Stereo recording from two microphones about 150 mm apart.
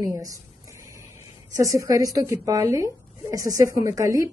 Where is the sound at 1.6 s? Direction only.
20° right (ahead or behind).